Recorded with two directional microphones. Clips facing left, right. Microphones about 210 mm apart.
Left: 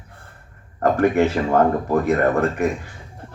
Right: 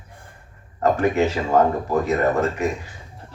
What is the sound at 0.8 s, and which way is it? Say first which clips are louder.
Speech: left 2 dB; 55° left (ahead or behind).